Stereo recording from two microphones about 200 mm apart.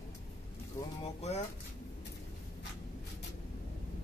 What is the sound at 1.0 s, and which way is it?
Speech, 30° left (ahead or behind).